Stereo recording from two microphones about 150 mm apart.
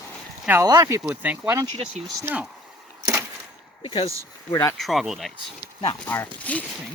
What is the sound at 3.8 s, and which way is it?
Speech, 40° left (ahead or behind).